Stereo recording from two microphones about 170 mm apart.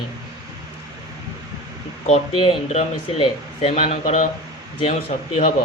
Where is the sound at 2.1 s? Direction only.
35° left (ahead or behind).